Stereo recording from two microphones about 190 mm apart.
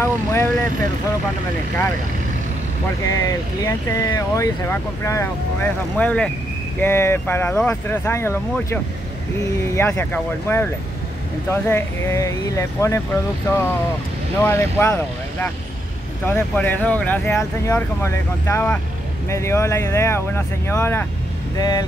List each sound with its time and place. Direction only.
0.0 s vehicle: 15° left (ahead or behind)
3.1 s speech: 15° left (ahead or behind)
9.8 s speech: 10° left (ahead or behind)
14.4 s speech: 15° left (ahead or behind)
16.3 s speech: 10° left (ahead or behind)